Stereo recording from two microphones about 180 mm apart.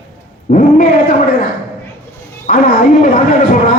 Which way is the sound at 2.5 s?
50° left (ahead or behind).